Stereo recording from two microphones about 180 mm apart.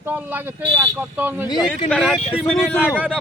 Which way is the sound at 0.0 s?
10° right (ahead or behind).